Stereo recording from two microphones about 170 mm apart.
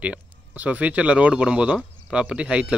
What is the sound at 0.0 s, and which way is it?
Speech, 10° right (ahead or behind).